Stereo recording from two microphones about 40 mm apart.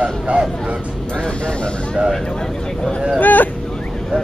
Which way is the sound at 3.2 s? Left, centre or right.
Left.